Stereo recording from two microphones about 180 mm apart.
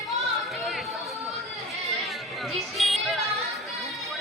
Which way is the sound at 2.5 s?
Centre (ahead or behind).